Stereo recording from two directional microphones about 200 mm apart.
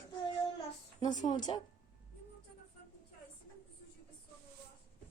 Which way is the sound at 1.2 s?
35° left (ahead or behind).